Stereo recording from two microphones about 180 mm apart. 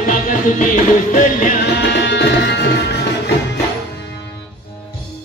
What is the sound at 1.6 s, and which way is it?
Music, 75° left (ahead or behind).